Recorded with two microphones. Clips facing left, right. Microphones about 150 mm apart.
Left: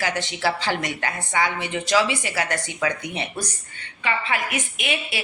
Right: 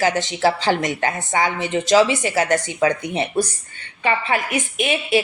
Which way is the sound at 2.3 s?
40° right (ahead or behind).